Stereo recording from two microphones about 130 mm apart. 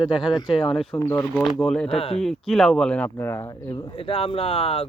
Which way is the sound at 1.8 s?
50° left (ahead or behind).